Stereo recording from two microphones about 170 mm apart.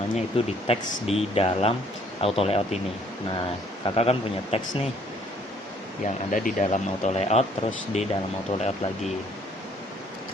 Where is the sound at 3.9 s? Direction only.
35° left (ahead or behind).